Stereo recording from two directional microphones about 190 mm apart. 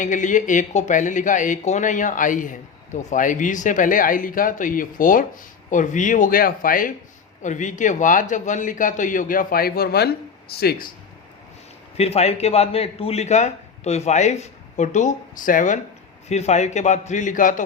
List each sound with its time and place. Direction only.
0.0 s speech: 40° left (ahead or behind)
11.9 s a man's voice: 35° left (ahead or behind)